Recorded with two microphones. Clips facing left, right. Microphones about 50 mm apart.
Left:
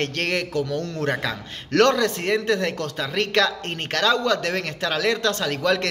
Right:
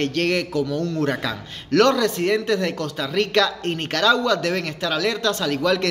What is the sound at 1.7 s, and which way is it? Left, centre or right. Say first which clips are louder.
Speech: right 1 dB; left.